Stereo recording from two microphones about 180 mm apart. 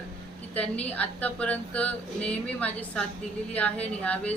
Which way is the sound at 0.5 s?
10° left (ahead or behind).